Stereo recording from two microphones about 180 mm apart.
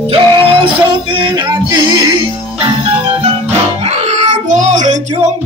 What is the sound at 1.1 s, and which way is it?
Music, 25° right (ahead or behind).